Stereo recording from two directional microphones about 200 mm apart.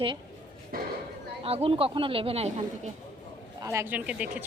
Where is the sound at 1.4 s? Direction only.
30° right (ahead or behind).